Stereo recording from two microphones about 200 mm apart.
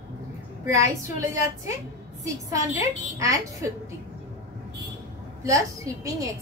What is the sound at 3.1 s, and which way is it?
Speech, 15° right (ahead or behind).